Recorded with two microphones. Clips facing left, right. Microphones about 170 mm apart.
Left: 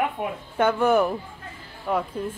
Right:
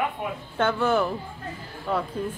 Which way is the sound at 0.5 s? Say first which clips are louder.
Left 3 dB; 15° left (ahead or behind).